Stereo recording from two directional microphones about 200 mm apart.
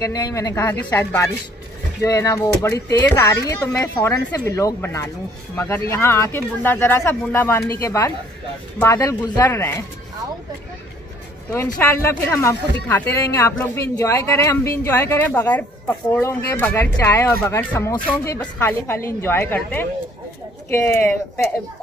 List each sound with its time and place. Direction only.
0.0 s speech: 15° left (ahead or behind)
11.5 s speech: 10° left (ahead or behind)